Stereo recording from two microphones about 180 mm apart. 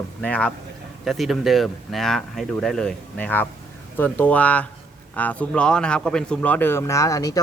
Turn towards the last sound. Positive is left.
turn(degrees=20)  # may be behind; listen again after turning